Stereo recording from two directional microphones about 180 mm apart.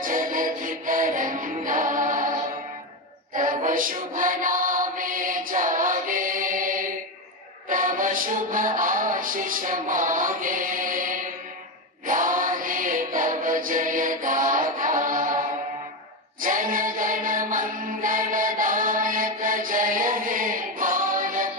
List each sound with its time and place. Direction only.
0.0 s music: 50° right (ahead or behind)
3.3 s music: 45° right (ahead or behind)
16.3 s chant: 50° right (ahead or behind)